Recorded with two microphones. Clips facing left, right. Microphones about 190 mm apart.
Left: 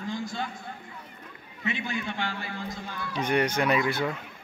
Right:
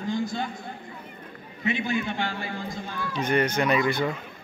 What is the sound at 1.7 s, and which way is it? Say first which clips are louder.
Speech: right 5 dB; 25° right (ahead or behind).